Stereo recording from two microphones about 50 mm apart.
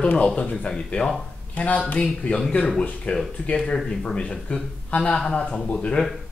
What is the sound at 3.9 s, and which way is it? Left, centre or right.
Speech, centre.